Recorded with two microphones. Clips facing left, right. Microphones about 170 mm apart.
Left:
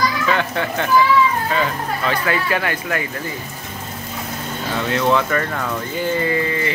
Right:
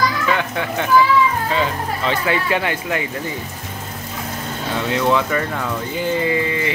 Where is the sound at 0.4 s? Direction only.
10° right (ahead or behind).